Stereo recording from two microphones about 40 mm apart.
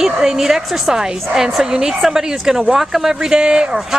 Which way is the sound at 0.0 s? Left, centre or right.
Centre.